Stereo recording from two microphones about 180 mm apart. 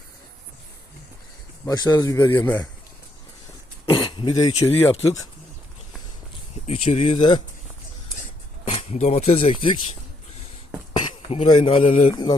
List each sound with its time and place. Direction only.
1.6 s speech: 20° left (ahead or behind)
2.2 s speech: 10° left (ahead or behind)
3.9 s throat clearing: 25° left (ahead or behind)
4.6 s speech: 10° left (ahead or behind)
6.7 s speech: 35° left (ahead or behind)
8.6 s speech: 35° left (ahead or behind)
10.9 s a sound: 30° left (ahead or behind)
11.7 s speech: 30° left (ahead or behind)